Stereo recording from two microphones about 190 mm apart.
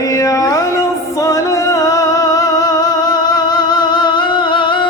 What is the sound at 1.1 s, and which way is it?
Music, 15° left (ahead or behind).